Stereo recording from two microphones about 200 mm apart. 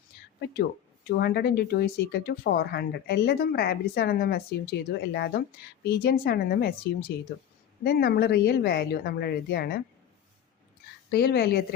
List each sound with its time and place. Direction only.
1.0 s speech: 50° left (ahead or behind)
11.1 s speech: 55° left (ahead or behind)